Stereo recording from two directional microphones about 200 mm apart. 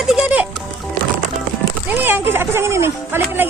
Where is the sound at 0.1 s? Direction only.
5° right (ahead or behind).